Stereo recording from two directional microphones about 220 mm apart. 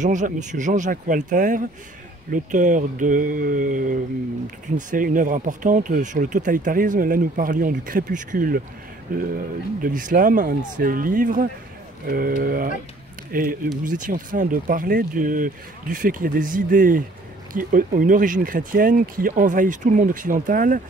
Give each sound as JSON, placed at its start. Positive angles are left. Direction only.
{"t": 0.0, "sound": "speech", "side_deg": -35}